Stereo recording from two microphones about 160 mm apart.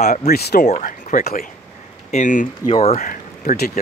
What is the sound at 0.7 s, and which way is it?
Speech, 50° left (ahead or behind).